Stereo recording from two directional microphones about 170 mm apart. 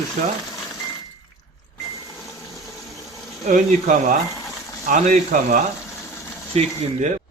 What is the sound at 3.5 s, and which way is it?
Speech, 45° right (ahead or behind).